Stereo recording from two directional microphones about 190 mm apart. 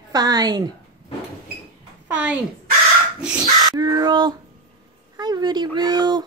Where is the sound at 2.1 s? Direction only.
5° right (ahead or behind).